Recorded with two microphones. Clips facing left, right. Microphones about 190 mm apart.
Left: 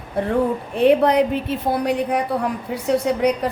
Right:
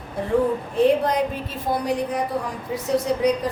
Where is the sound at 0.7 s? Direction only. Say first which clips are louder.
Left 4 dB; 65° left (ahead or behind).